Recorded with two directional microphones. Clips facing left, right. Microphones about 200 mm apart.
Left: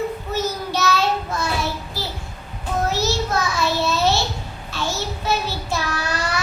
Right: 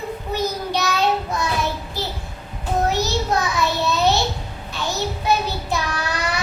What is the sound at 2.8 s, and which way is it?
Child singing, 15° right (ahead or behind).